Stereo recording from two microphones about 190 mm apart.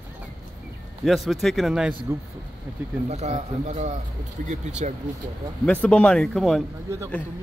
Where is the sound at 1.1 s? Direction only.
Centre (ahead or behind).